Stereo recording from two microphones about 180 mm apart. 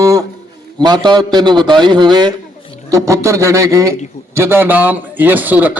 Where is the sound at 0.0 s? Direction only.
20° right (ahead or behind).